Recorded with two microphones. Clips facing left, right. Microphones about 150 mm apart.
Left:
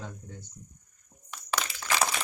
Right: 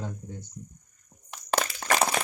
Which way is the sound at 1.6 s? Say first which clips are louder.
Right 5 dB; 45° right (ahead or behind).